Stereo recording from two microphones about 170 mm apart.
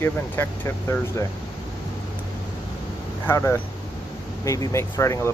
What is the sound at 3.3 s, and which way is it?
Speech, 15° left (ahead or behind).